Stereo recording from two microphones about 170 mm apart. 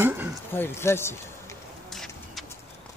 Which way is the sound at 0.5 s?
15° left (ahead or behind).